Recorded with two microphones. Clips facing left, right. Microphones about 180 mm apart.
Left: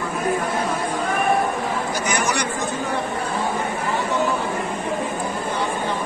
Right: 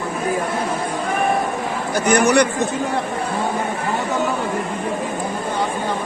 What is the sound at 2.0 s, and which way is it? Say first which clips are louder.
Speech: right 12 dB; 60° right (ahead or behind).